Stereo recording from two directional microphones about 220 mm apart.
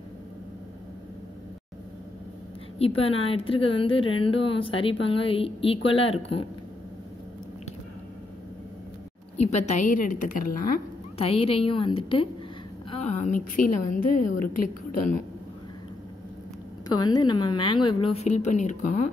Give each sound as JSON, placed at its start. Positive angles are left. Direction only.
{"t": 2.8, "sound": "a woman's voice", "side_deg": 25}
{"t": 9.4, "sound": "a woman's voice", "side_deg": 30}
{"t": 11.1, "sound": "a woman's voice", "side_deg": 25}
{"t": 16.9, "sound": "a woman's voice", "side_deg": 20}